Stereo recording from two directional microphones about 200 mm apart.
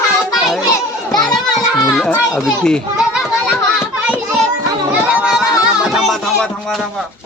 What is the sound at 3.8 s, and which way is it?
Children playing, 5° right (ahead or behind).